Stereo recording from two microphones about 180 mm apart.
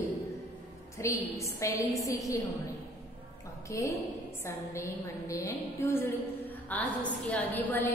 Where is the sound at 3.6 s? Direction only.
15° left (ahead or behind).